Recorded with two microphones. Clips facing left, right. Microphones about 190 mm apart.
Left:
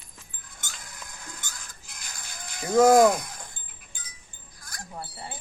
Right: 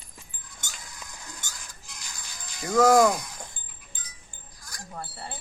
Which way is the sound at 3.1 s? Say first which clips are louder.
Left 2 dB; 50° left (ahead or behind).